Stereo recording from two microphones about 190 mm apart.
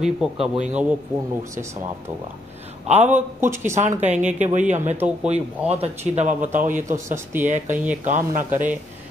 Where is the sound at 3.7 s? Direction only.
40° right (ahead or behind).